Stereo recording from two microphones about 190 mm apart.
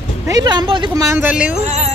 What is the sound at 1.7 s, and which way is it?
Speech, 35° right (ahead or behind).